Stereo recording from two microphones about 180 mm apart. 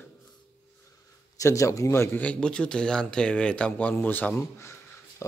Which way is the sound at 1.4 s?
15° left (ahead or behind).